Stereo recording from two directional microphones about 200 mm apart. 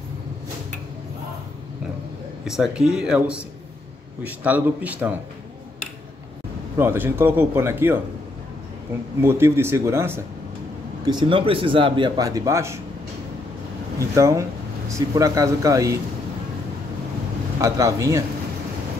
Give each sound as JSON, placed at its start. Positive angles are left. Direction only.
{"t": 2.4, "sound": "speech", "side_deg": 0}
{"t": 6.8, "sound": "speech", "side_deg": -10}
{"t": 9.2, "sound": "speech", "side_deg": -10}
{"t": 11.1, "sound": "a man's voice", "side_deg": -25}
{"t": 13.9, "sound": "speech", "side_deg": -15}
{"t": 17.6, "sound": "speech", "side_deg": -15}